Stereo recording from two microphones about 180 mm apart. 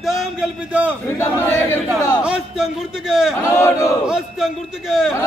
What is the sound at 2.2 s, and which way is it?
Speech, 5° right (ahead or behind).